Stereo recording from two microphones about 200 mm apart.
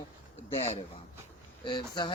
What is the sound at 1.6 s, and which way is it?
Speech, 20° left (ahead or behind).